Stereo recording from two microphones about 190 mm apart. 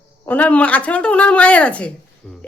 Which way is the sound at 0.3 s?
10° left (ahead or behind).